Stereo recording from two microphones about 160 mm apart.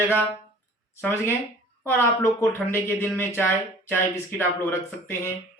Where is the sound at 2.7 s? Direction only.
15° left (ahead or behind).